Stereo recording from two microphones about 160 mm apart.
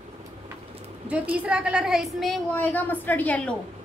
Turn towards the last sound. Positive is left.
turn(degrees=10)  # may be behind; listen again after turning